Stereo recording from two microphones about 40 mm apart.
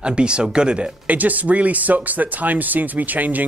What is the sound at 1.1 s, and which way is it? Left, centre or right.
Speech, right.